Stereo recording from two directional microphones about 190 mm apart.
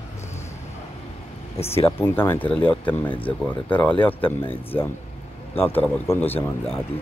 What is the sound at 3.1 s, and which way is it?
Speech, 25° left (ahead or behind).